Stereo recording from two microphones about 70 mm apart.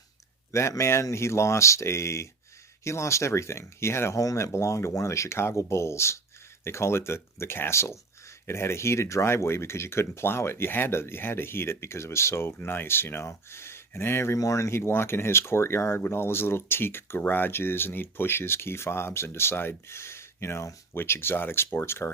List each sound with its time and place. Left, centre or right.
0.5 s speech: left
4.2 s speech: left
14.3 s speech: left